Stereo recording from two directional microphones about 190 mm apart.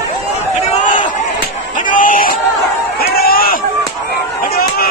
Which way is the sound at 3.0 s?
50° left (ahead or behind).